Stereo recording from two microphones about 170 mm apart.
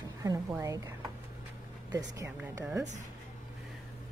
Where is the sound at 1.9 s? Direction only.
20° right (ahead or behind).